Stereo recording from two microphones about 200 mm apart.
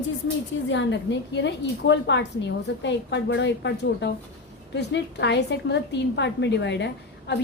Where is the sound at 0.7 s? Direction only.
65° left (ahead or behind).